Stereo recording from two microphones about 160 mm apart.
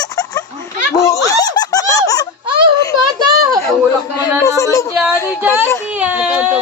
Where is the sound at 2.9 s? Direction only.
25° right (ahead or behind).